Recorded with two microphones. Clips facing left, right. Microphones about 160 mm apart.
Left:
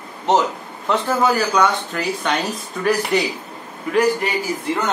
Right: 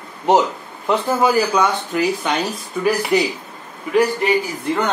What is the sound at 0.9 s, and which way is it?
Speech, 10° right (ahead or behind).